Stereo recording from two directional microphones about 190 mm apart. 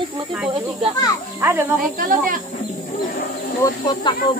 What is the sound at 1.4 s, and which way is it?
Speech, 10° right (ahead or behind).